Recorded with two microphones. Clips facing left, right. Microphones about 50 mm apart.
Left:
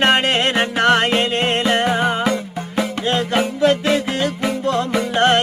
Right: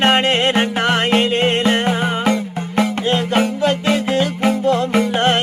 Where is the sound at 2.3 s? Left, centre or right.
Right.